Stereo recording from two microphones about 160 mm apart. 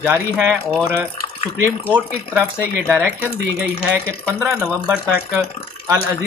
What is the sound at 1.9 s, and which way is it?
Speech, 10° right (ahead or behind).